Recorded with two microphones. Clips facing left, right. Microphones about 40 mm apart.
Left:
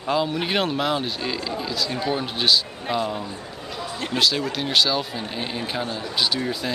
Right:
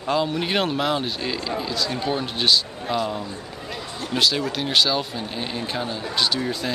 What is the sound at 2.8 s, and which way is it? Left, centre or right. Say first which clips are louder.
Speech: even; left.